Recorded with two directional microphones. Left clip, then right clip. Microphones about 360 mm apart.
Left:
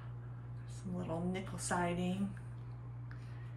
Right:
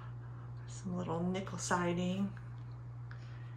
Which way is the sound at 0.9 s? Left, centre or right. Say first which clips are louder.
Right 2 dB; centre.